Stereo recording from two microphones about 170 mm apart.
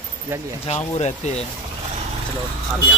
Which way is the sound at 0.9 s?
40° left (ahead or behind).